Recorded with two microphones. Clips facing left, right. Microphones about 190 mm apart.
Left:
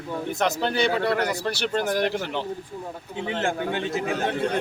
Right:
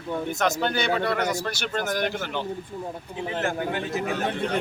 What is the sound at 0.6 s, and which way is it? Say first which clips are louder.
A man's voice: left 2 dB; 30° left (ahead or behind).